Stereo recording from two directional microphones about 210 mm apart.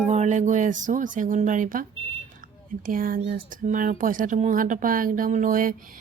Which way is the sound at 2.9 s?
40° right (ahead or behind).